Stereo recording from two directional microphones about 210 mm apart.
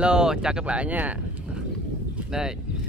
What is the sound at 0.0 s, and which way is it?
Speech, 5° right (ahead or behind).